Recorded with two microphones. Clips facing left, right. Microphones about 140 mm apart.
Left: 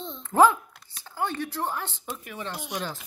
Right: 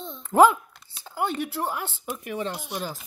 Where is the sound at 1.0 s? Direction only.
15° right (ahead or behind).